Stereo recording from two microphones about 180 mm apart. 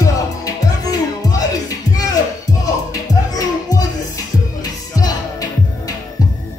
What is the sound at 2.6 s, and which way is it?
Music, 20° left (ahead or behind).